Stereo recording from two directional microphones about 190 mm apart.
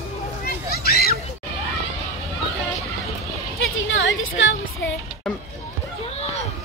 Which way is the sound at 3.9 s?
80° left.